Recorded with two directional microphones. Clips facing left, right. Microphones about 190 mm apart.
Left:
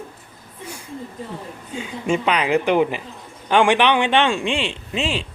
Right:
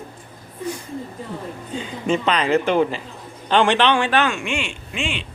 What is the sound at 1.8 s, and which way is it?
A woman's voice, 10° left (ahead or behind).